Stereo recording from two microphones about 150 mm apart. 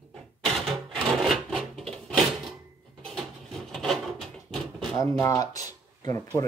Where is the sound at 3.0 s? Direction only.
5° left (ahead or behind).